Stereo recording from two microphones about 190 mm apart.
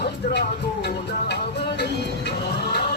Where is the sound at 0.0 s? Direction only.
60° left (ahead or behind).